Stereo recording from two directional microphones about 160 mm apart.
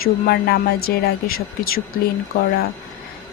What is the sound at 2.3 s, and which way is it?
Speech, 80° left.